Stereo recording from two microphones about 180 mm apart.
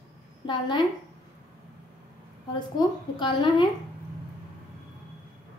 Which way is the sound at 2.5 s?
25° left (ahead or behind).